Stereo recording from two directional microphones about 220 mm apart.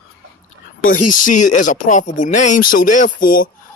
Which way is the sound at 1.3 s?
35° left (ahead or behind).